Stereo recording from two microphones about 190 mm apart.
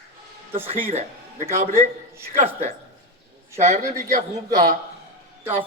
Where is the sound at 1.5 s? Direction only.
45° right (ahead or behind).